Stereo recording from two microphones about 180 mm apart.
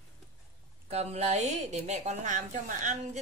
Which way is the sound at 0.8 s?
35° right (ahead or behind).